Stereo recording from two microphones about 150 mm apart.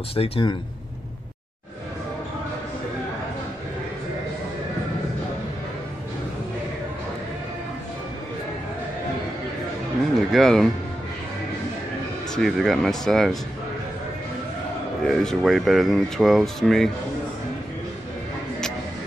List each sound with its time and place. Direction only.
0.1 s speech: 35° left (ahead or behind)
10.3 s speech: centre (ahead or behind)
12.4 s speech: centre (ahead or behind)
15.0 s speech: centre (ahead or behind)